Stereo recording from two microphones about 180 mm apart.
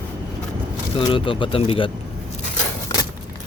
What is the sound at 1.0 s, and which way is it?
Speech, 30° left (ahead or behind).